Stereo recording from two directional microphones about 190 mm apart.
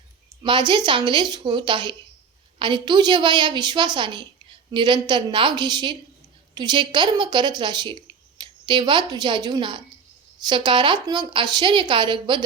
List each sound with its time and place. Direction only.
0.4 s a woman's voice: 25° right (ahead or behind)